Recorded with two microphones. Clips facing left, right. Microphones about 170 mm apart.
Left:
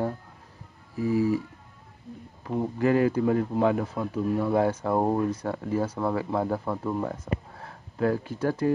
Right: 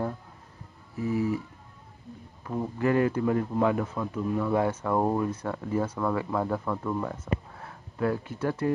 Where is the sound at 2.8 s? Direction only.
30° left (ahead or behind).